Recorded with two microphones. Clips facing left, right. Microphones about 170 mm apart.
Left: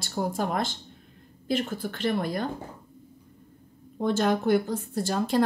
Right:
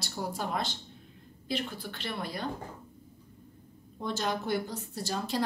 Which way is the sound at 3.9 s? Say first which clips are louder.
Left 8 dB; 55° left (ahead or behind).